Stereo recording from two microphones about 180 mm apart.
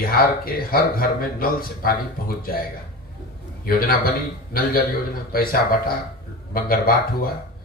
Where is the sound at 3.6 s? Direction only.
55° left (ahead or behind).